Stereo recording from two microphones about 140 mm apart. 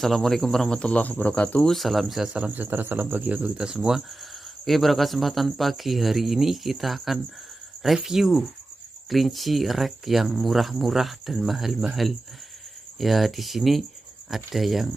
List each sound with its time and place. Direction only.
0.0 s speech: centre (ahead or behind)